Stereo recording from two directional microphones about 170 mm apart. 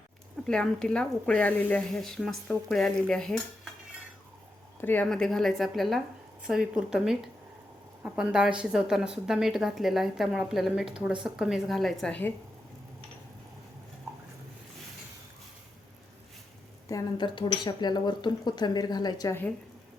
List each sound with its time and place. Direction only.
0.4 s a woman's voice: 5° left (ahead or behind)
4.8 s a woman's voice: 10° left (ahead or behind)
16.9 s speech: 25° left (ahead or behind)